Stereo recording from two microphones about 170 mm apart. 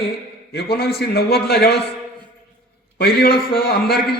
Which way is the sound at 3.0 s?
65° left (ahead or behind).